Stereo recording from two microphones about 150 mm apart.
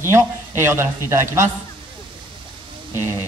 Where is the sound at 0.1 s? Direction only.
15° right (ahead or behind).